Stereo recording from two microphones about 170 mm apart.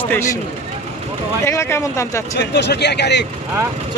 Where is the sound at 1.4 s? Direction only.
15° left (ahead or behind).